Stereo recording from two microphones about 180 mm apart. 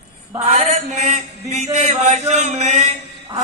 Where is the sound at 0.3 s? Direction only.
35° right (ahead or behind).